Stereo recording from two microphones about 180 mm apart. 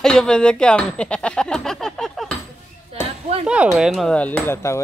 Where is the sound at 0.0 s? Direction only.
5° left (ahead or behind).